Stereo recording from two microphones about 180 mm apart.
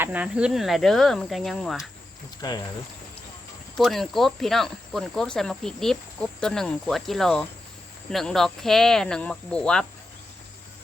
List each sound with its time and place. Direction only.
0.0 s speech: 10° right (ahead or behind)
2.4 s speech: 20° left (ahead or behind)
3.8 s speech: centre (ahead or behind)